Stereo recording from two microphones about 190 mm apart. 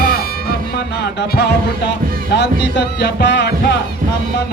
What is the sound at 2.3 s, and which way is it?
Speech, 65° left (ahead or behind).